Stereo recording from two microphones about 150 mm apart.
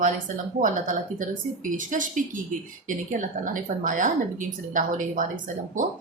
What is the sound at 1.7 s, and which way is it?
A woman's voice, 60° right (ahead or behind).